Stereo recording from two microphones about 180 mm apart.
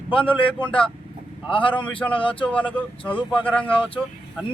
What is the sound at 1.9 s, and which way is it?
Speech, 5° left (ahead or behind).